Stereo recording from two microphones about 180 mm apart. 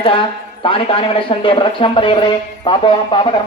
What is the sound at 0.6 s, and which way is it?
A man's voice, 30° left (ahead or behind).